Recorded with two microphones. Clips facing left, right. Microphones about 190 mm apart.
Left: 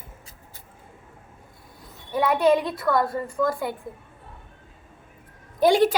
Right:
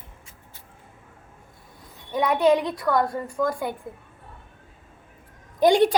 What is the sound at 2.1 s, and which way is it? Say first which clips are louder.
A woman's voice: even; 15° right (ahead or behind).